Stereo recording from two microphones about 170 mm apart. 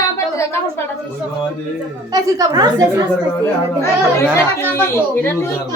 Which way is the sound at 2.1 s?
20° right (ahead or behind).